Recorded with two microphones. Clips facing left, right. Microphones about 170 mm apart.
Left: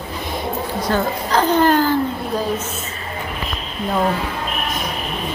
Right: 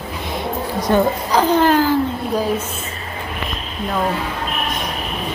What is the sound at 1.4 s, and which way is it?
Speech, centre (ahead or behind).